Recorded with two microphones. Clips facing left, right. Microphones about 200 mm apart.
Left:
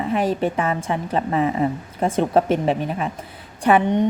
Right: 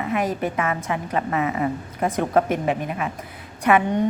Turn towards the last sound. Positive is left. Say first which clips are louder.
# left 2 dB
turn(degrees=30)  # may be behind; listen again after turning